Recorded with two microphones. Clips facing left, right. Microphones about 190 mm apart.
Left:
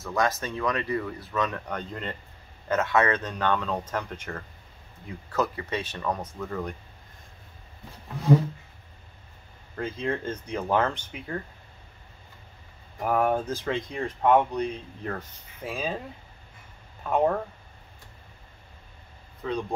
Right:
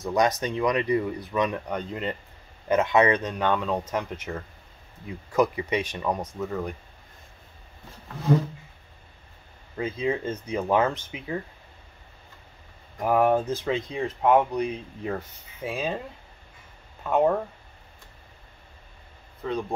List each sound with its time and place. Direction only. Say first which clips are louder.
0.0 s speech: right 4 dB; 20° right (ahead or behind)
9.8 s speech: right 3 dB; 5° right (ahead or behind)
13.0 s speech: right 3 dB; 5° right (ahead or behind)
17.1 s speech: right 2 dB; 5° right (ahead or behind)
19.4 s speech: right 1 dB; centre (ahead or behind)